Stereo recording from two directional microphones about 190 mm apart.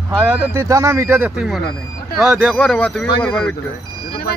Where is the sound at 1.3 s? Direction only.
Centre (ahead or behind).